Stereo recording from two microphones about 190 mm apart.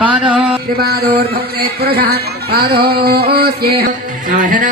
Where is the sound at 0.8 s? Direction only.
55° right (ahead or behind).